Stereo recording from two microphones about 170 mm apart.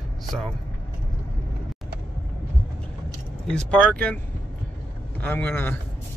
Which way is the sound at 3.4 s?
5° left (ahead or behind).